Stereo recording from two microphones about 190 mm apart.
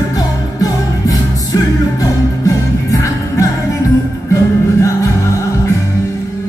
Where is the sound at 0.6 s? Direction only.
20° left (ahead or behind).